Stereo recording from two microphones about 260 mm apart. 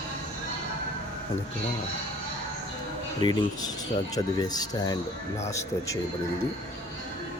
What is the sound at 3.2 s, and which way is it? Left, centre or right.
Speech, centre.